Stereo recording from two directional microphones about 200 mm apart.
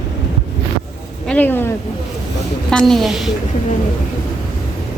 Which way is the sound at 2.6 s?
Centre (ahead or behind).